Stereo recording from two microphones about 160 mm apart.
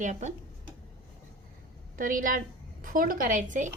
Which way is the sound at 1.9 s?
60° right (ahead or behind).